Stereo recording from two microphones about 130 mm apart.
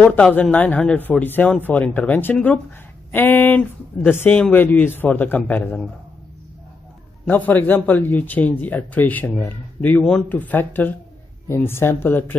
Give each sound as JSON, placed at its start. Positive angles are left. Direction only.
{"t": 0.0, "sound": "speech", "side_deg": 10}
{"t": 7.2, "sound": "speech", "side_deg": 15}